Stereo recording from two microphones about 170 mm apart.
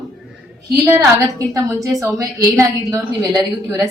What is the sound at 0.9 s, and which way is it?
A woman's voice, 15° right (ahead or behind).